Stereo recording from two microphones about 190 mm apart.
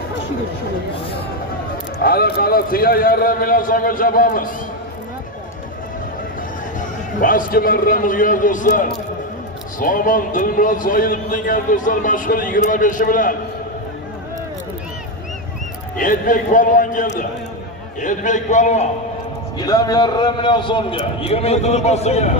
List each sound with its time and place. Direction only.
2.0 s a man's voice: 55° left (ahead or behind)
6.8 s a man's voice: 45° left (ahead or behind)
16.0 s a man's voice: 45° left (ahead or behind)
19.6 s a man's voice: 20° left (ahead or behind); by 22.3 s 35° left (ahead or behind)